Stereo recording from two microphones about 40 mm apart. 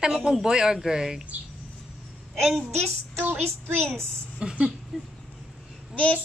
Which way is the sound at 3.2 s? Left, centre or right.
Right.